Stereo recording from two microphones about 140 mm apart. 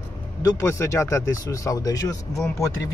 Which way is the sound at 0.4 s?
20° left (ahead or behind).